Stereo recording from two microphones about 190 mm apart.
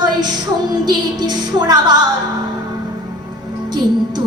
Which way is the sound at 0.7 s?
20° right (ahead or behind).